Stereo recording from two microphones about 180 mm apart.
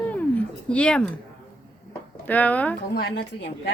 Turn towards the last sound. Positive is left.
turn(degrees=70)  # may be behind; listen again after turning